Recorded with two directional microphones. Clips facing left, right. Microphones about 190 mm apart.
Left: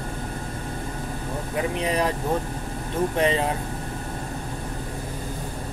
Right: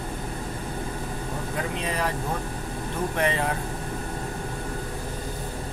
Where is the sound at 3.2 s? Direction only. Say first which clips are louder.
Left 3 dB; 20° left (ahead or behind).